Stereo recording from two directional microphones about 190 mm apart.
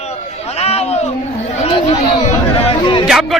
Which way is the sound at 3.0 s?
Centre (ahead or behind).